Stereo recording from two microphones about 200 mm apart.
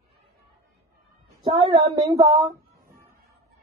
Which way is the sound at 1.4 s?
25° right (ahead or behind).